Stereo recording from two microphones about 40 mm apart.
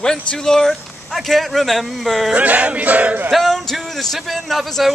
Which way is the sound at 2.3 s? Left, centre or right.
Right.